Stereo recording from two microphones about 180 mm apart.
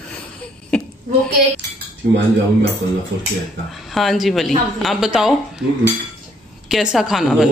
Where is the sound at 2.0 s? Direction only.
60° right (ahead or behind).